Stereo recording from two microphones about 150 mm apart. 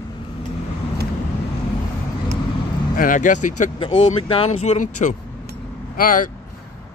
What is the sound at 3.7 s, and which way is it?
Speech, 35° left (ahead or behind).